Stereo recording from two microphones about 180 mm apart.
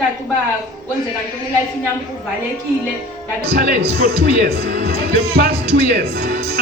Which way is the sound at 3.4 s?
60° right (ahead or behind).